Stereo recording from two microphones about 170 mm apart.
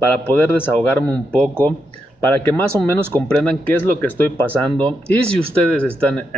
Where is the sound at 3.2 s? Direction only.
10° left (ahead or behind).